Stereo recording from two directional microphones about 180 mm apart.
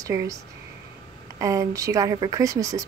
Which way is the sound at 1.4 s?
15° right (ahead or behind).